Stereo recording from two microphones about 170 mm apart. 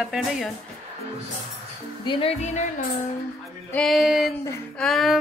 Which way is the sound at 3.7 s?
5° left (ahead or behind).